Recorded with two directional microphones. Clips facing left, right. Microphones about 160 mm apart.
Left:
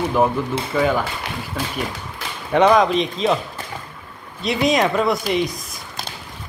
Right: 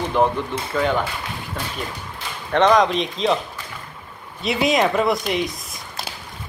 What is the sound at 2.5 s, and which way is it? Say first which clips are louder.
Speech: left 1 dB; 10° left (ahead or behind).